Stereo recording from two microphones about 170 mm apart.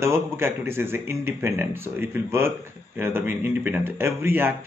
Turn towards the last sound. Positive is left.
turn(degrees=-15)  # may be behind; listen again after turning